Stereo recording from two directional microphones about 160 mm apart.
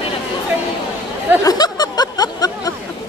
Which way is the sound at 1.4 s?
25° left (ahead or behind).